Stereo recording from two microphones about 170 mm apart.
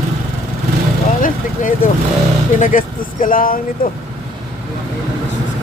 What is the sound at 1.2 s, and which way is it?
Speech, 50° left (ahead or behind).